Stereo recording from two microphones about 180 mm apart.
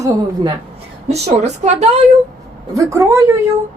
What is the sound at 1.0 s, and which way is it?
Speech, 35° right (ahead or behind).